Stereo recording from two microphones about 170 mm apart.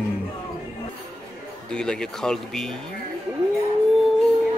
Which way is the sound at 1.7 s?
5° left (ahead or behind).